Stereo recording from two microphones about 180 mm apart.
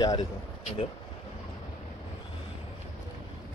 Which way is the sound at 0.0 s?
25° left (ahead or behind).